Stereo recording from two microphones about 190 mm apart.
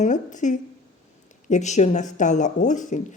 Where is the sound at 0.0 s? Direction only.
40° left (ahead or behind).